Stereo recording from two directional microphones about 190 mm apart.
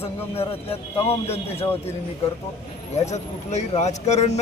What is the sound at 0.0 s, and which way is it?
Speech, 30° left (ahead or behind).